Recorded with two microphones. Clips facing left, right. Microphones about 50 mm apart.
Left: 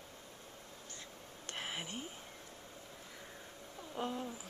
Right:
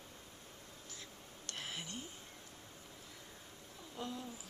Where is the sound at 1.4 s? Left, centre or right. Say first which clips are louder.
Left 3 dB; left.